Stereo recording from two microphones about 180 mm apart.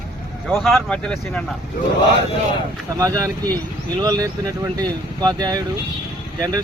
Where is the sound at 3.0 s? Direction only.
20° right (ahead or behind).